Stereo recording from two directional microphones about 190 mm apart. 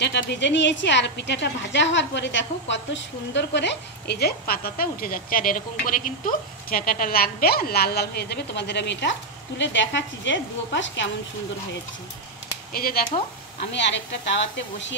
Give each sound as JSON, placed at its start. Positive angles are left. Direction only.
{"t": 0.0, "sound": "a woman's voice", "side_deg": 65}
{"t": 12.7, "sound": "speech", "side_deg": 50}
{"t": 13.6, "sound": "speech", "side_deg": 65}